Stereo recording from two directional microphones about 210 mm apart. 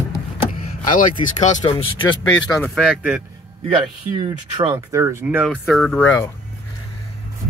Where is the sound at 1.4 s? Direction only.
30° left (ahead or behind).